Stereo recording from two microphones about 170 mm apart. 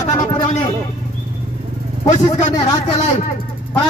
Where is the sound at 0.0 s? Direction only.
25° left (ahead or behind).